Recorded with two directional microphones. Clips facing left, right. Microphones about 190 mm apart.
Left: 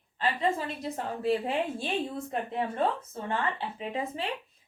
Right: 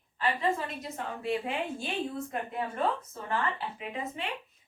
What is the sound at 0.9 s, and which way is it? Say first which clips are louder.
A woman's voice: left 4 dB; 35° left (ahead or behind).